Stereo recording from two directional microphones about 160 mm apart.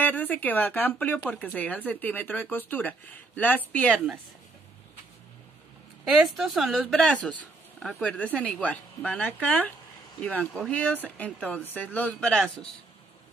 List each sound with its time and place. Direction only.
0.0 s speech: 10° left (ahead or behind)
6.0 s a woman's voice: centre (ahead or behind)